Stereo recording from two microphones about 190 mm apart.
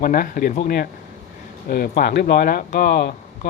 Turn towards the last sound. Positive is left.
turn(degrees=50)  # may be behind; listen again after turning